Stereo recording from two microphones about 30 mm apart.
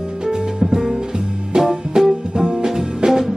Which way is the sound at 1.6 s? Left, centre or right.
Centre.